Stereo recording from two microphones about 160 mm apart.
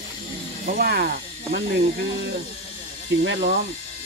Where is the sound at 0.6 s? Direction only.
70° right (ahead or behind).